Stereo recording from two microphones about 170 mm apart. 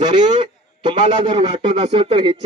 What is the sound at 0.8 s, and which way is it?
A man's voice, 30° right (ahead or behind).